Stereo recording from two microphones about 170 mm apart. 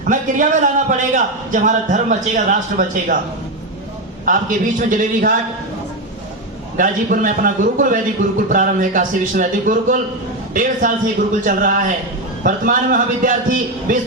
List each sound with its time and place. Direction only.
0.0 s a man's voice: 50° right (ahead or behind)
4.3 s a man's voice: 50° right (ahead or behind)
6.7 s a man's voice: 55° right (ahead or behind)